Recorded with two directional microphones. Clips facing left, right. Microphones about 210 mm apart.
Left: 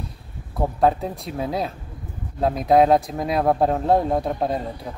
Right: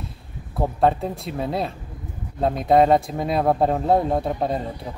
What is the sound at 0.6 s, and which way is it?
Speech, centre (ahead or behind).